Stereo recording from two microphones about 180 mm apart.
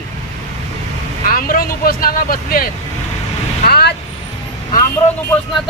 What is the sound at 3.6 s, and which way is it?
Vehicle, 60° left (ahead or behind).